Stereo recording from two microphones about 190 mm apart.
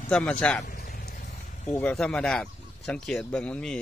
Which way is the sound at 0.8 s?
50° left (ahead or behind).